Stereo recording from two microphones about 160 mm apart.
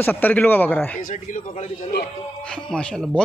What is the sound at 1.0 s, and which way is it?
Speech, 50° left (ahead or behind).